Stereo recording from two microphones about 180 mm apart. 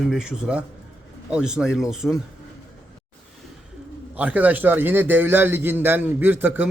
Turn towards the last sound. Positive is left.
turn(degrees=-10)  # may be behind; listen again after turning